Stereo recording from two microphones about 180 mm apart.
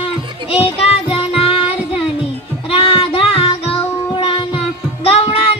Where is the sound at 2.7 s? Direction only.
30° left (ahead or behind).